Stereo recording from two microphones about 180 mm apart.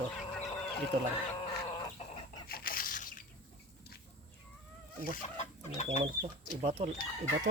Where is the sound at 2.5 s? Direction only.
55° left (ahead or behind).